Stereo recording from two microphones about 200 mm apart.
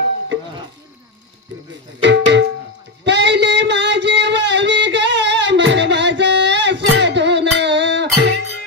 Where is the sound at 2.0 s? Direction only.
60° right (ahead or behind).